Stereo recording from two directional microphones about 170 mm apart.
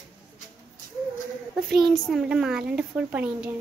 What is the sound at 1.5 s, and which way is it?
Speech, centre (ahead or behind).